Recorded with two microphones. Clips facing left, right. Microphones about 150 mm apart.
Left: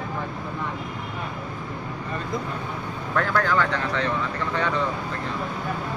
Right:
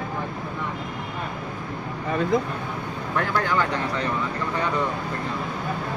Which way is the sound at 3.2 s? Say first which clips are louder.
Left 1 dB; 20° right (ahead or behind).